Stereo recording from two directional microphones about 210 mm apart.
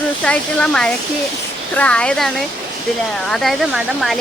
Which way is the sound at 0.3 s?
5° left (ahead or behind).